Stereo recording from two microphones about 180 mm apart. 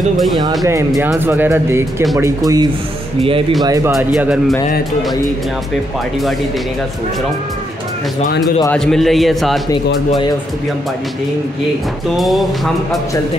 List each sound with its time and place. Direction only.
0.7 s speech: 15° right (ahead or behind)
3.2 s speech: 30° right (ahead or behind)
3.6 s speech: 20° right (ahead or behind)
3.9 s a man's voice: 5° right (ahead or behind)
8.7 s a man's voice: centre (ahead or behind)
12.2 s a man's voice: centre (ahead or behind)